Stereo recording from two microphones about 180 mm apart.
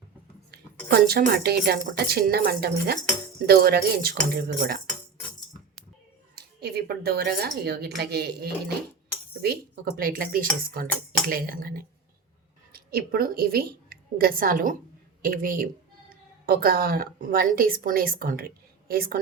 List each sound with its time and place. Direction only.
0.9 s speech: 60° right (ahead or behind)
6.3 s speech: 60° right (ahead or behind)
10.0 s a woman's voice: 55° right (ahead or behind)